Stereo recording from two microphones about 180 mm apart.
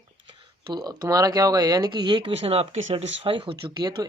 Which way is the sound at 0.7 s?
20° right (ahead or behind).